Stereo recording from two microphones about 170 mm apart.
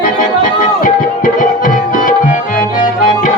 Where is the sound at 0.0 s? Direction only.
55° left (ahead or behind).